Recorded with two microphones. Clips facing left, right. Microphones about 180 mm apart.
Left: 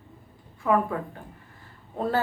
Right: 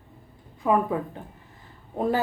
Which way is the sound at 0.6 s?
15° right (ahead or behind).